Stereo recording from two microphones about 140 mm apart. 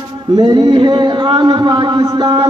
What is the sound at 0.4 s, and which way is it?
Mantra, 30° right (ahead or behind).